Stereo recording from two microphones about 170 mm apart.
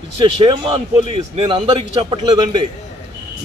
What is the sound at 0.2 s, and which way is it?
A man's voice, 30° right (ahead or behind).